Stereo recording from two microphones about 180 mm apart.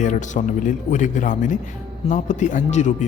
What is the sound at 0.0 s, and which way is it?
Speech, 45° left (ahead or behind).